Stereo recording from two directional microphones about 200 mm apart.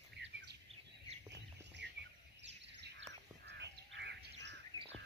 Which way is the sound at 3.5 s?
60° right (ahead or behind).